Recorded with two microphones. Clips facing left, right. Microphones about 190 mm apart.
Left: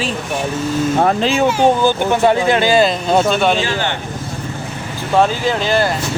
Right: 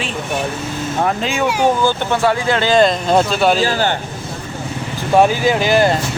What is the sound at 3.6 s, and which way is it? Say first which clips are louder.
Speech: right 3 dB; 40° right (ahead or behind).